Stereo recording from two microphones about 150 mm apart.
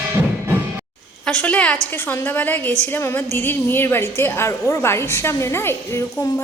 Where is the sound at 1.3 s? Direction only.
10° left (ahead or behind).